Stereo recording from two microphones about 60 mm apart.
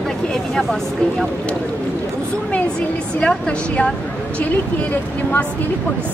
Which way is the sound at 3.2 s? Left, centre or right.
Centre.